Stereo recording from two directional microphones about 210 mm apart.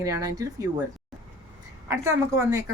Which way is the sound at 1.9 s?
15° right (ahead or behind).